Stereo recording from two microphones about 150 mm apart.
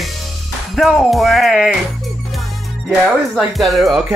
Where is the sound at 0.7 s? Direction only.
Centre (ahead or behind).